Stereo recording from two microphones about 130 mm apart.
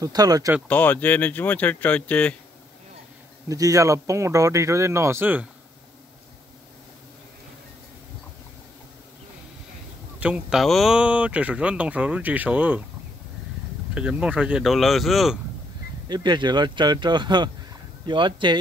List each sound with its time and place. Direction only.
0.0 s speech: 30° right (ahead or behind)
0.7 s speech: 15° left (ahead or behind)
3.4 s speech: 25° right (ahead or behind)
10.2 s speech: 5° right (ahead or behind)
13.9 s speech: 5° right (ahead or behind)
16.1 s speech: 35° right (ahead or behind)